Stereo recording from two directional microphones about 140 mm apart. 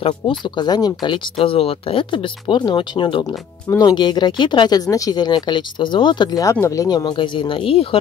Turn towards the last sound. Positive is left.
turn(degrees=40)  # may be behind; listen again after turning